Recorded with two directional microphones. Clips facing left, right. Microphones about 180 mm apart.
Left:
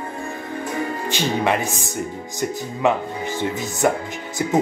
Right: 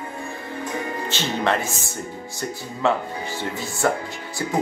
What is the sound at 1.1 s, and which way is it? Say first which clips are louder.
Speech: left 2 dB; 15° left (ahead or behind).